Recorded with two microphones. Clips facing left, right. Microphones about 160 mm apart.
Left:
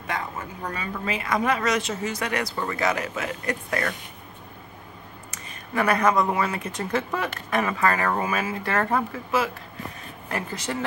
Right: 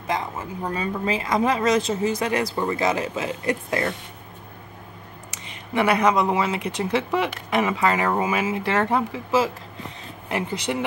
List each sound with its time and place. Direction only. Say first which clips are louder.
0.0 s speech: right 4 dB; 25° right (ahead or behind)
5.8 s speech: right 2 dB; 15° right (ahead or behind)
10.2 s speech: right 4 dB; 20° right (ahead or behind)